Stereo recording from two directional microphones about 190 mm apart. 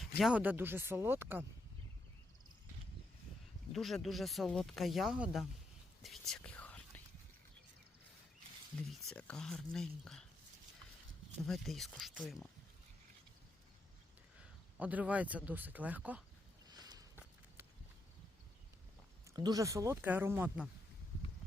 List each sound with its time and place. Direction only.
0.2 s speech: 5° right (ahead or behind)
3.7 s speech: centre (ahead or behind)
6.0 s whispering: centre (ahead or behind)
9.0 s speech: 5° left (ahead or behind)
11.4 s speech: centre (ahead or behind)
14.8 s speech: 10° right (ahead or behind)
16.6 s a sound: 20° right (ahead or behind)
19.3 s speech: 20° right (ahead or behind)